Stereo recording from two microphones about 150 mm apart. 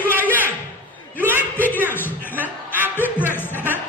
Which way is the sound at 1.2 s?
15° right (ahead or behind).